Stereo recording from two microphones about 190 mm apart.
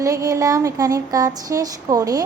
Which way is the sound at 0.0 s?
15° right (ahead or behind).